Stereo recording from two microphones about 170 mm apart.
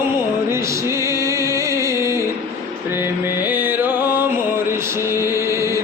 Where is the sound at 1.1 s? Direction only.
15° right (ahead or behind).